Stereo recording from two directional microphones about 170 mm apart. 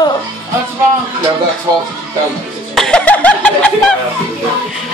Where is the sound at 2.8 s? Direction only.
5° left (ahead or behind).